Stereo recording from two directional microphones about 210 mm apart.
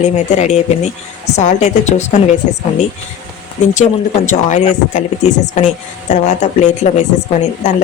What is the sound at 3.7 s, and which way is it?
Speech, 35° left (ahead or behind).